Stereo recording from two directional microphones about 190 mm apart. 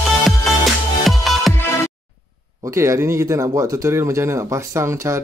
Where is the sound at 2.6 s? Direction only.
15° right (ahead or behind).